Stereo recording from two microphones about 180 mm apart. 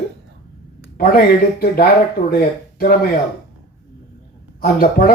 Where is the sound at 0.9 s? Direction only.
55° left (ahead or behind).